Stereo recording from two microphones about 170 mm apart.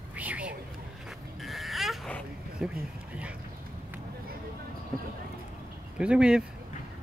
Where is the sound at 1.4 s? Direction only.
Centre (ahead or behind).